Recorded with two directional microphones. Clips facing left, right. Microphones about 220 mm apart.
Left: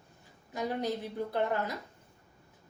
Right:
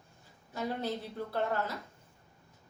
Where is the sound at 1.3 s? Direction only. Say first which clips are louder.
Left 1 dB; 15° left (ahead or behind).